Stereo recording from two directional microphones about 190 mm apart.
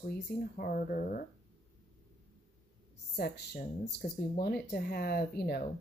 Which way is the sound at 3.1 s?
55° left (ahead or behind).